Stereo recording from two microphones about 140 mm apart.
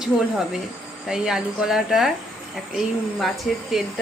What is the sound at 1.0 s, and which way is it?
Speech, 5° right (ahead or behind).